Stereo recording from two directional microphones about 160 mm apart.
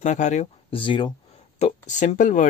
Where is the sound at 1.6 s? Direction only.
50° left (ahead or behind).